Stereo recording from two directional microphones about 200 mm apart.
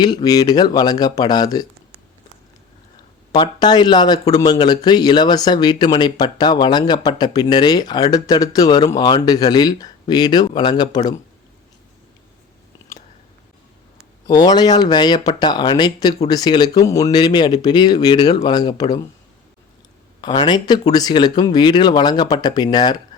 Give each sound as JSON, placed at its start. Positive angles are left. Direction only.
{"t": 0.0, "sound": "speech", "side_deg": 20}
{"t": 3.3, "sound": "speech", "side_deg": 20}
{"t": 14.3, "sound": "speech", "side_deg": 20}
{"t": 20.2, "sound": "speech", "side_deg": 20}